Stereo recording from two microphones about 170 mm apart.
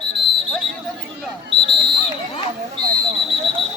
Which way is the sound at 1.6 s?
30° right (ahead or behind).